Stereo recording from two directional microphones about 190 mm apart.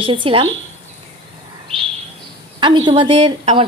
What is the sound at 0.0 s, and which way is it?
Speech, 25° right (ahead or behind).